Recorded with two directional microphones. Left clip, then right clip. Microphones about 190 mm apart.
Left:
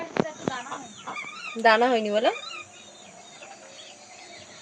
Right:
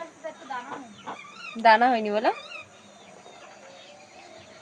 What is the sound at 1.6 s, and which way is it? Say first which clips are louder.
Speech: right 1 dB; 50° left (ahead or behind).